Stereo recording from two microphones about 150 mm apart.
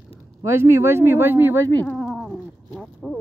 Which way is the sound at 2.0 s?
Centre (ahead or behind).